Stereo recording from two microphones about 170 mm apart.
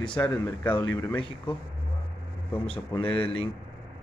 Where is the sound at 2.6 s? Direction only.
30° left (ahead or behind).